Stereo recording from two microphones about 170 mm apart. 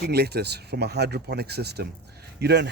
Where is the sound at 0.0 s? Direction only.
70° right (ahead or behind).